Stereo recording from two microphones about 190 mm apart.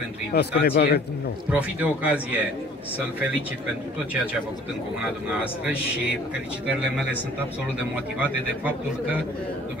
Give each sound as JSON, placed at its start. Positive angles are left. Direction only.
{"t": 0.3, "sound": "a man's voice", "side_deg": 60}
{"t": 1.5, "sound": "speech", "side_deg": -5}